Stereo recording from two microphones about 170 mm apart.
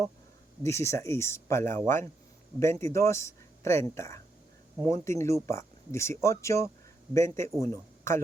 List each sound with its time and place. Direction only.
0.6 s speech: 15° left (ahead or behind)